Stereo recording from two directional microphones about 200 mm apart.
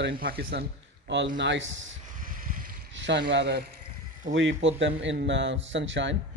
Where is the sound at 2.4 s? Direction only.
45° right (ahead or behind).